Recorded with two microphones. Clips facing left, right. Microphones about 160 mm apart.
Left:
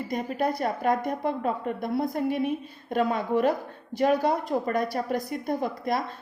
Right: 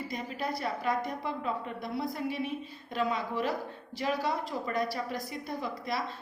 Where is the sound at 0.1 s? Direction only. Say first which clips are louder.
Left 11 dB; 50° left (ahead or behind).